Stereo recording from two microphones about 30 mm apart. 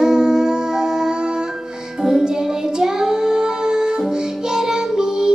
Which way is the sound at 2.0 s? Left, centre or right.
Centre.